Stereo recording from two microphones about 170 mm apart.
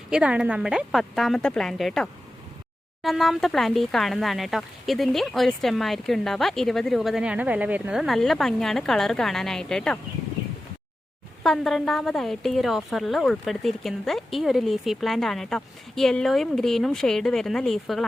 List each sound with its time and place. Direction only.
0.1 s speech: 5° right (ahead or behind)
11.4 s speech: centre (ahead or behind)